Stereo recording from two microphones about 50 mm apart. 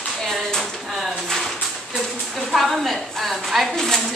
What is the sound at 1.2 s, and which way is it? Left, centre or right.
A woman's voice, centre.